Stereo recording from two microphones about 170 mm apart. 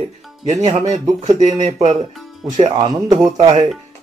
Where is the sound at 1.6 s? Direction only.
40° right (ahead or behind).